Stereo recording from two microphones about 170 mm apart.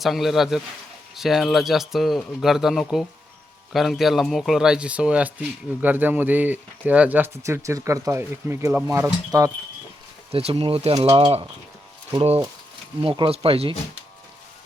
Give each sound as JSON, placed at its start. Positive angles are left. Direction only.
{"t": 0.0, "sound": "speech", "side_deg": 0}
{"t": 10.3, "sound": "speech", "side_deg": -35}
{"t": 13.0, "sound": "speech", "side_deg": -30}